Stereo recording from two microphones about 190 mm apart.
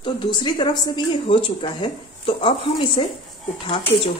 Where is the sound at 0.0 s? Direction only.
25° left (ahead or behind).